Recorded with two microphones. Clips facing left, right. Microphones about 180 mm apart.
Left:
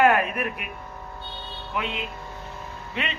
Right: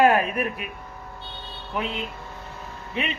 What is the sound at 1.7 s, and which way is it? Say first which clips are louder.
Speech: right 1 dB; 35° right (ahead or behind).